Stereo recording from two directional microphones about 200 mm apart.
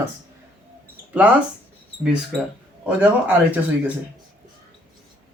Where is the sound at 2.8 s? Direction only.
5° right (ahead or behind).